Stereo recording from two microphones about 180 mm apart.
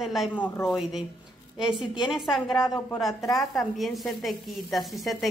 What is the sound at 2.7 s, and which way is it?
A woman's voice, centre (ahead or behind).